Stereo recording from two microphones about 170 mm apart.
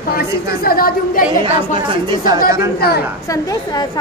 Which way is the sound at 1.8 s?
25° right (ahead or behind).